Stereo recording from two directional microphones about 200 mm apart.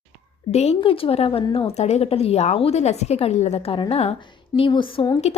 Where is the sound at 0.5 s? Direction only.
30° left (ahead or behind).